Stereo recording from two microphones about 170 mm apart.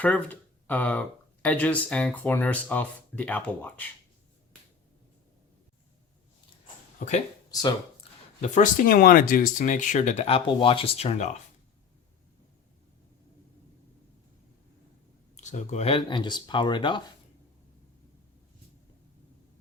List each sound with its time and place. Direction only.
0.0 s speech: 10° left (ahead or behind)
7.0 s speech: 50° left (ahead or behind)
8.4 s speech: 45° left (ahead or behind)
15.4 s speech: 45° left (ahead or behind); by 17.0 s 30° left (ahead or behind)